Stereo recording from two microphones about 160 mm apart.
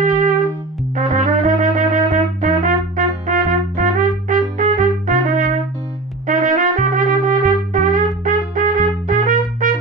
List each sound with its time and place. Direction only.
0.9 s trumpet: 55° right (ahead or behind)